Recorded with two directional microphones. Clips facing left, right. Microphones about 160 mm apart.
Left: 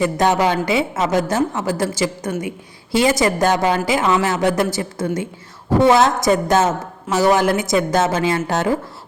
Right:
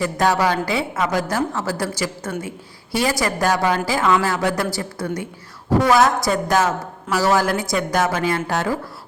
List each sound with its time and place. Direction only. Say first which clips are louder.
0.0 s a woman's voice: left 2 dB; 20° left (ahead or behind)